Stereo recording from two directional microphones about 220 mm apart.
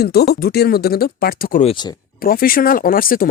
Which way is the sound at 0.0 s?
45° left (ahead or behind).